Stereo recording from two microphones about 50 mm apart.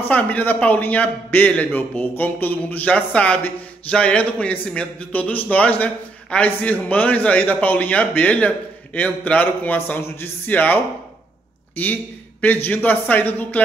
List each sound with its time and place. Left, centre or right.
0.1 s a man's voice: left